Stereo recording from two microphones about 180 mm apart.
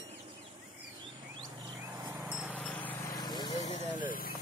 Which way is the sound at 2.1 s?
5° right (ahead or behind).